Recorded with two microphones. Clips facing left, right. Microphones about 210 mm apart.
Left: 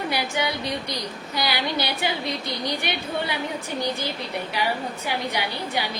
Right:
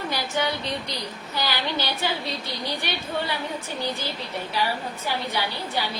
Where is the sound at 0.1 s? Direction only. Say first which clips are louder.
Left 1 dB; 10° left (ahead or behind).